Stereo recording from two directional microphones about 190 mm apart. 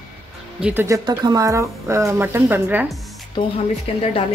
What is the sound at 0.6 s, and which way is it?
Speech, 5° right (ahead or behind).